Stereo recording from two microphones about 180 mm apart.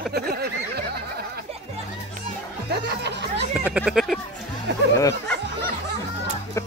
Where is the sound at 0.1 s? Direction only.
60° right (ahead or behind).